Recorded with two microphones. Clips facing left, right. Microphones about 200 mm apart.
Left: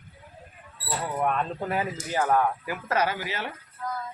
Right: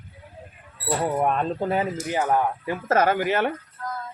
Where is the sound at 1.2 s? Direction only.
30° right (ahead or behind).